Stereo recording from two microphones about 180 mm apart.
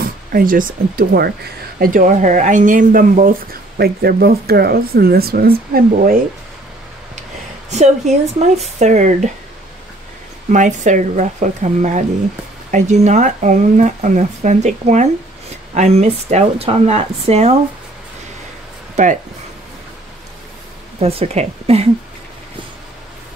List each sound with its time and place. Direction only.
0.0 s a sound: 50° right (ahead or behind)
0.9 s speech: 60° right (ahead or behind)
7.7 s speech: 40° right (ahead or behind)
10.5 s speech: 45° right (ahead or behind)
19.0 s speech: 40° right (ahead or behind)
21.0 s speech: 35° right (ahead or behind)